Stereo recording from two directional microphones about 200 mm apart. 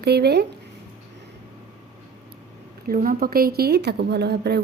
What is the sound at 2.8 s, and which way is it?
A woman's voice, 45° right (ahead or behind).